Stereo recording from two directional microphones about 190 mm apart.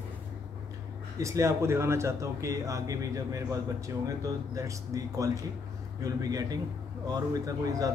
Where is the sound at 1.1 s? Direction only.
15° right (ahead or behind).